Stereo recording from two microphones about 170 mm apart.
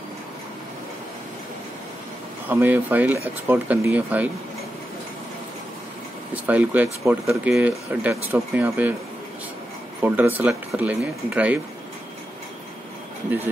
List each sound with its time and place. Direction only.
2.4 s speech: 10° right (ahead or behind)
6.3 s speech: 10° right (ahead or behind)
10.0 s speech: 10° right (ahead or behind)